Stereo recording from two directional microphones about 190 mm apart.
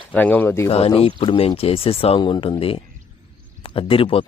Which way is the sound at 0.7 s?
30° left (ahead or behind).